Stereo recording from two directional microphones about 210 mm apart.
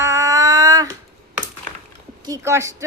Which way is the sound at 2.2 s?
15° right (ahead or behind).